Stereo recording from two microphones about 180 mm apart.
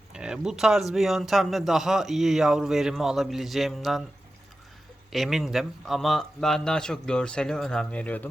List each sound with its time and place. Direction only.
0.1 s speech: 5° right (ahead or behind)
5.1 s speech: centre (ahead or behind)